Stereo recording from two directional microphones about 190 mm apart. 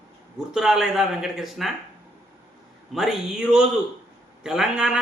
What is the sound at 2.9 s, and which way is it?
A man's voice, centre (ahead or behind).